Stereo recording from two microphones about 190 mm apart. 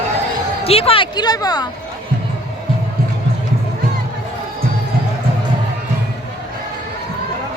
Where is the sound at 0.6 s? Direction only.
30° left (ahead or behind).